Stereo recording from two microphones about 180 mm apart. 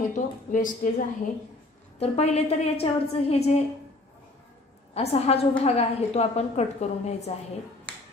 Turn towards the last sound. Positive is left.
turn(degrees=35)  # may be behind; listen again after turning